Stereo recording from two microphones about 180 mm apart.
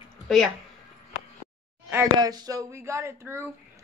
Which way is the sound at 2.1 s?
20° right (ahead or behind).